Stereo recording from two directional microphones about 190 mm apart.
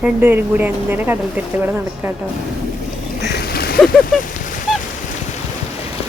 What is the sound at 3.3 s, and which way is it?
Splash, 55° left (ahead or behind).